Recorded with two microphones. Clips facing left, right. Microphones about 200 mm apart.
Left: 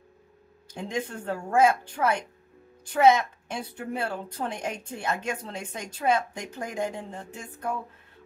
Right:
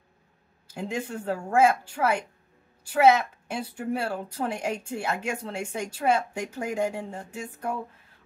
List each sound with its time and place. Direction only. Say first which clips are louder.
0.7 s a woman's voice: even; 5° right (ahead or behind)